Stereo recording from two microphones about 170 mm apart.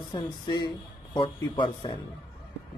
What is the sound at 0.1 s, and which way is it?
Speech, 25° left (ahead or behind).